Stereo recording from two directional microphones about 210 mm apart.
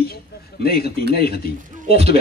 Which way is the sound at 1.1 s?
50° left (ahead or behind).